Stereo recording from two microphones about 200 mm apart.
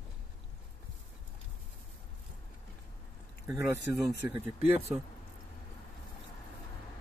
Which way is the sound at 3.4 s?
15° right (ahead or behind).